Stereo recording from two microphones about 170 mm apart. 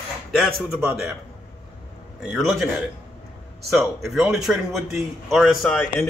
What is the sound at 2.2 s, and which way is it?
Speech, centre (ahead or behind).